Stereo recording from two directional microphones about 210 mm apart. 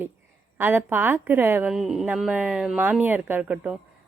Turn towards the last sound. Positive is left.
turn(degrees=-5)  # may be behind; listen again after turning